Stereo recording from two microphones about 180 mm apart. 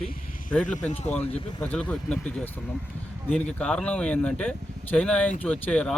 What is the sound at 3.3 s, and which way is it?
Speech, 5° left (ahead or behind).